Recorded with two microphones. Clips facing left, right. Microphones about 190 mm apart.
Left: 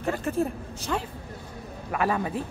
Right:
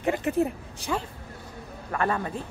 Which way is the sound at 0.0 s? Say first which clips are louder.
Right 2 dB; 15° right (ahead or behind).